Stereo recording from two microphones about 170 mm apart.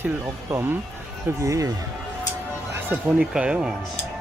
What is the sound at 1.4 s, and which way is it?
Speech, 20° right (ahead or behind).